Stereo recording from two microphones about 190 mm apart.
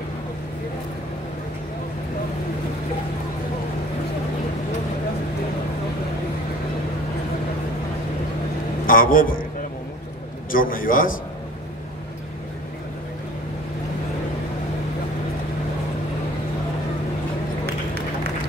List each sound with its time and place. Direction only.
8.8 s a man's voice: 45° left (ahead or behind)
10.5 s a man's voice: 45° left (ahead or behind)